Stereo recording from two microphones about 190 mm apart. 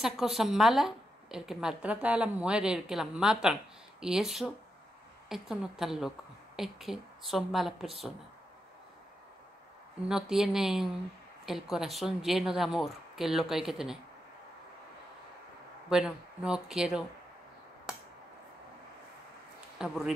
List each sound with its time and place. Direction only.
0.0 s a woman's voice: centre (ahead or behind)
10.0 s a woman's voice: 5° right (ahead or behind)
15.9 s a woman's voice: 5° right (ahead or behind)
19.8 s a woman's voice: 5° right (ahead or behind)